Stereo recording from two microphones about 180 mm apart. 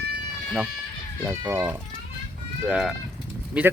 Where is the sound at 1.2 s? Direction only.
10° right (ahead or behind).